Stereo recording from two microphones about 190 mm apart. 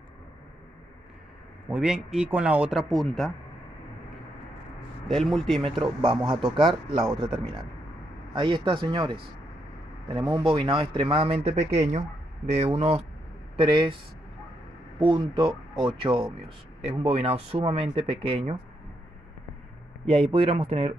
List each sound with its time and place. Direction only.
1.7 s speech: 5° right (ahead or behind)
5.0 s speech: centre (ahead or behind)
5.8 s speech: 25° right (ahead or behind)
8.4 s speech: 25° right (ahead or behind)
15.0 s speech: 25° right (ahead or behind)
20.1 s speech: 30° right (ahead or behind)